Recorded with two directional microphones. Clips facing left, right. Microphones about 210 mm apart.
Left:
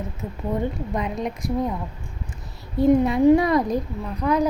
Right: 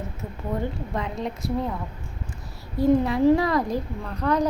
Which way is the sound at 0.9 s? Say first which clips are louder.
Left 2 dB; 15° left (ahead or behind).